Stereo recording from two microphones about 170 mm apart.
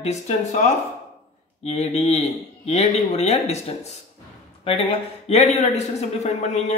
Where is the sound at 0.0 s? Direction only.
45° left (ahead or behind).